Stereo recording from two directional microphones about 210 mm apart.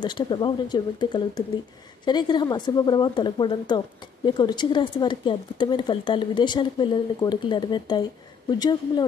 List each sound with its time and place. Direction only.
0.0 s speech: 20° left (ahead or behind)